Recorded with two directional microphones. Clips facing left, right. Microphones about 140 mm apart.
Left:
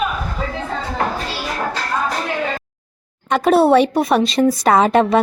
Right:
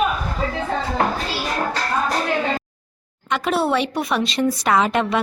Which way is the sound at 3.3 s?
40° left (ahead or behind).